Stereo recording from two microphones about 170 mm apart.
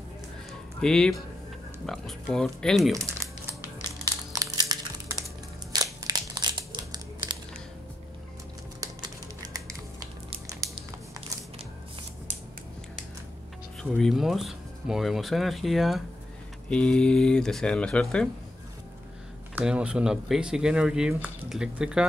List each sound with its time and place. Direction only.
0.5 s a sound: 5° left (ahead or behind)
1.9 s speech: centre (ahead or behind)
4.0 s crushing: 25° right (ahead or behind)
5.2 s crumpling: 20° right (ahead or behind)
9.4 s a sound: 20° right (ahead or behind)
13.8 s speech: centre (ahead or behind)
19.5 s speech: 5° right (ahead or behind)